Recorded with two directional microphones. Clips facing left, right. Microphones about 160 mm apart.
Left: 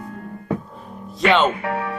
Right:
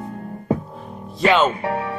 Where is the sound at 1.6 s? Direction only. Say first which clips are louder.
Right 1 dB; 30° right (ahead or behind).